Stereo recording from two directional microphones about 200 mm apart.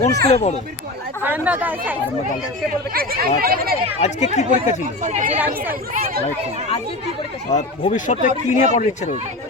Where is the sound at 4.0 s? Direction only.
35° left (ahead or behind).